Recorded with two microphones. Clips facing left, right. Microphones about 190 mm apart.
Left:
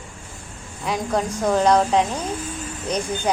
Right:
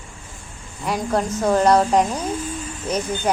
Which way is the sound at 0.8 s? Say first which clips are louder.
Right 1 dB; 5° right (ahead or behind).